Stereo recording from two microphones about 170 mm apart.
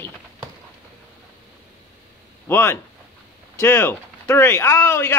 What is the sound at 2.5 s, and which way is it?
Speech, 15° left (ahead or behind).